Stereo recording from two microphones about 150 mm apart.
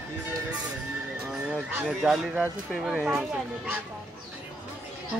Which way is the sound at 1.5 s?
10° right (ahead or behind).